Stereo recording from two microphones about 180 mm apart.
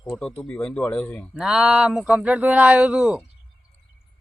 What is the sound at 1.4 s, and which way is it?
Speech, 5° right (ahead or behind).